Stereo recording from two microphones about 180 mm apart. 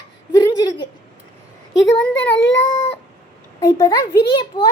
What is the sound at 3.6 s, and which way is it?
A child's voice, 20° left (ahead or behind).